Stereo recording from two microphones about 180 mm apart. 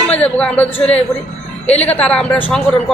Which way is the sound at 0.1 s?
5° left (ahead or behind).